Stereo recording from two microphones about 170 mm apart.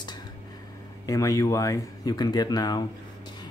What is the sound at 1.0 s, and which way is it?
Speech, 20° left (ahead or behind).